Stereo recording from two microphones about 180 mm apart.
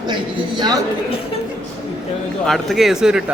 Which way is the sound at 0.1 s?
25° right (ahead or behind).